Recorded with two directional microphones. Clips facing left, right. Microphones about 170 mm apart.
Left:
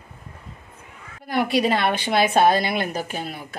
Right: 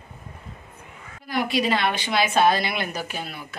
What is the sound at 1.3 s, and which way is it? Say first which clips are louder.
A woman's voice: left 3 dB; 55° left (ahead or behind).